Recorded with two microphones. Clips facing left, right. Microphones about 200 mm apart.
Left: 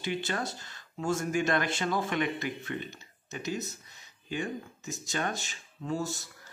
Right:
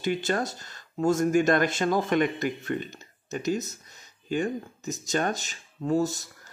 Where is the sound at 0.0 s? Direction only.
45° right (ahead or behind).